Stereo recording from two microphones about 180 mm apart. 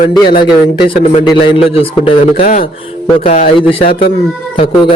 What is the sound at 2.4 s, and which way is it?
Speech, 50° left (ahead or behind).